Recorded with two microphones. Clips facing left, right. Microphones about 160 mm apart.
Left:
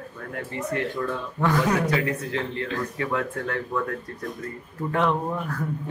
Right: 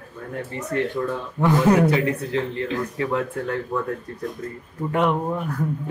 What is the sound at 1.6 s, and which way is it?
A man's voice, 30° right (ahead or behind).